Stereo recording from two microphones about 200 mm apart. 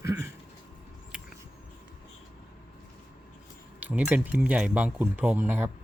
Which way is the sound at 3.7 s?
10° right (ahead or behind).